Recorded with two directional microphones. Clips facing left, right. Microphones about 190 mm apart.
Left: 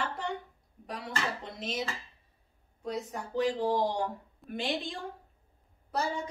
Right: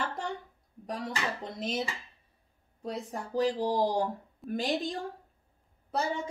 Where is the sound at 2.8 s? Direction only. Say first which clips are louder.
Even; 35° right (ahead or behind).